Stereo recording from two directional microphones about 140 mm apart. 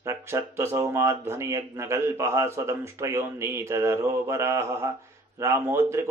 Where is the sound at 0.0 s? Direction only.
20° right (ahead or behind).